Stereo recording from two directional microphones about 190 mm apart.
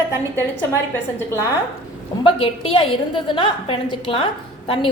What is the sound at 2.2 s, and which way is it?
A woman's voice, 25° left (ahead or behind).